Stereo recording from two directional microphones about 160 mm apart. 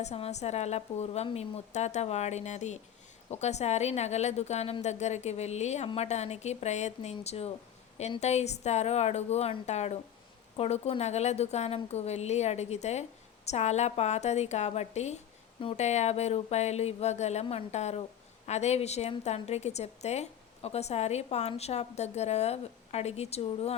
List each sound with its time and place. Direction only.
0.0 s a woman's voice: 45° left (ahead or behind)